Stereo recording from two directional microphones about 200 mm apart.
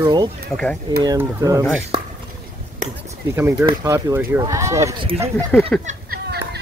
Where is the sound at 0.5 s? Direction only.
5° left (ahead or behind).